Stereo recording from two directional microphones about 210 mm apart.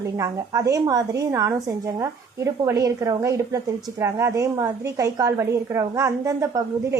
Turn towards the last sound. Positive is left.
turn(degrees=-15)  # may be behind; listen again after turning